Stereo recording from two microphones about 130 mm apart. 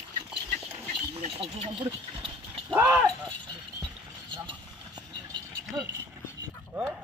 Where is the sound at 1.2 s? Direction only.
50° right (ahead or behind).